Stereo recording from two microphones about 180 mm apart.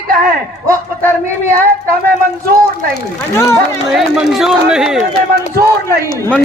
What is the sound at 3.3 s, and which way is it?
Speech, 15° left (ahead or behind).